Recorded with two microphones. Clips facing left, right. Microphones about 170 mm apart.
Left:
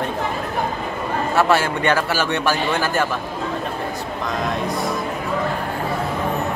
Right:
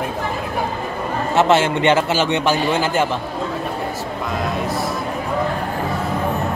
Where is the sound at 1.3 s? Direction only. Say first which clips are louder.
Right 3 dB; 20° right (ahead or behind).